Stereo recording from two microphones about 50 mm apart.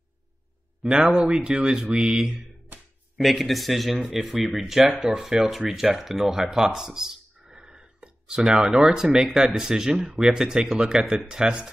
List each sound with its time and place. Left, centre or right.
0.8 s speech: centre
3.2 s speech: centre